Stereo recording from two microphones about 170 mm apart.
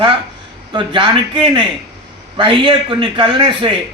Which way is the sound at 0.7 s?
25° right (ahead or behind).